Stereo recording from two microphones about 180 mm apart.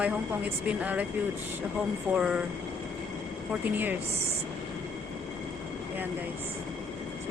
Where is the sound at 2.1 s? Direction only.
5° right (ahead or behind).